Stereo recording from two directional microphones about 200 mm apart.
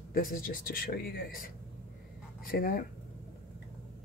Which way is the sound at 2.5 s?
45° left (ahead or behind).